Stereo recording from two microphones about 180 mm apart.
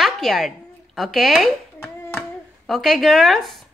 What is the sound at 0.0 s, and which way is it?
A woman's voice, centre (ahead or behind).